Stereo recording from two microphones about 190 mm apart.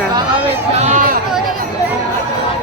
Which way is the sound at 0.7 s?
40° right (ahead or behind).